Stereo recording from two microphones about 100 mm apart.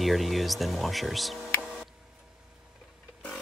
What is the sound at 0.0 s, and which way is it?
Speech, centre (ahead or behind).